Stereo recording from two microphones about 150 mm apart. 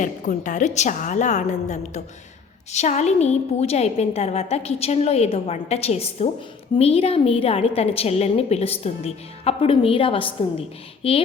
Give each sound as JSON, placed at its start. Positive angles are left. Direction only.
{"t": 0.0, "sound": "a woman's voice", "side_deg": 55}